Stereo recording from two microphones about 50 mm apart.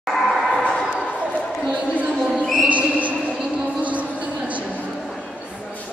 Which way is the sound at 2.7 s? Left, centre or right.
Right.